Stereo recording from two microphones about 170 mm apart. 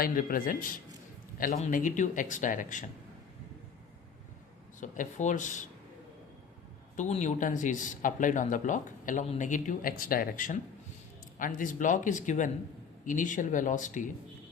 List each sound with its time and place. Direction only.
0.0 s speech: 55° left (ahead or behind)
4.8 s speech: 45° left (ahead or behind)
6.9 s speech: 45° left (ahead or behind)